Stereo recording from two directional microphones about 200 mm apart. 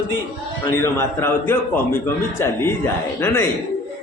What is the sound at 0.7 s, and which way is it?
A man's voice, 10° left (ahead or behind).